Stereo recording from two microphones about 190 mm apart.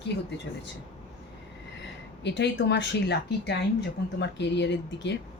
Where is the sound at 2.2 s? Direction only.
65° left (ahead or behind).